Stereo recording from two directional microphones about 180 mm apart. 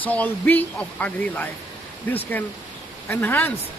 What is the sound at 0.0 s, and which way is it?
Speech, 10° left (ahead or behind).